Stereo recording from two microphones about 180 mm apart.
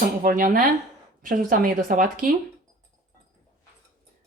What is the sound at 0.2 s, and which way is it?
Speech, 50° right (ahead or behind).